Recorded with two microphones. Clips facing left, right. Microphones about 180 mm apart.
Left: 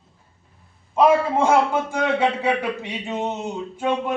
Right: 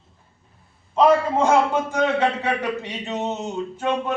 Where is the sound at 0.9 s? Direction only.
10° left (ahead or behind).